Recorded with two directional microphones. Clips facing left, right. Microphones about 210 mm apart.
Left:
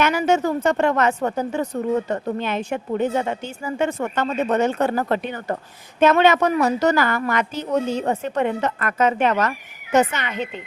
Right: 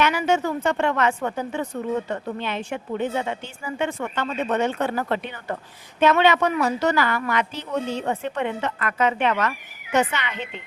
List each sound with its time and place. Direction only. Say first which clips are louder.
0.0 s a woman's voice: left 3 dB; 45° left (ahead or behind)